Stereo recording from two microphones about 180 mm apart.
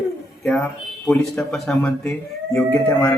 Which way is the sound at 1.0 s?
Centre (ahead or behind).